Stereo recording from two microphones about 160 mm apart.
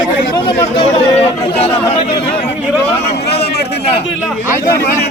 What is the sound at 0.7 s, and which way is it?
Chatter, 40° left (ahead or behind).